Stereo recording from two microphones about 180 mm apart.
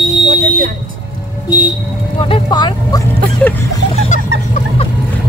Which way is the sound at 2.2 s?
25° left (ahead or behind).